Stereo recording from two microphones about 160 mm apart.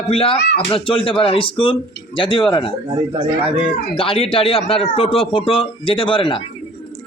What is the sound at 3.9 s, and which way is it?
A man's voice, 35° left (ahead or behind).